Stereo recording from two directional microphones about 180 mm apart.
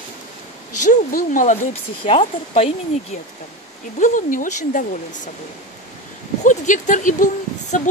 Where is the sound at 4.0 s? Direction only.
45° left (ahead or behind).